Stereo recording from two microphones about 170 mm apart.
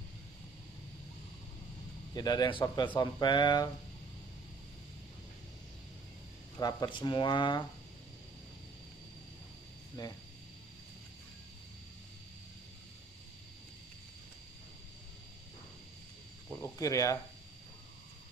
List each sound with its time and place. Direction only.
2.1 s speech: 25° left (ahead or behind)
6.6 s speech: 25° left (ahead or behind)
10.0 s speech: 25° left (ahead or behind)
16.4 s cricket: 15° left (ahead or behind)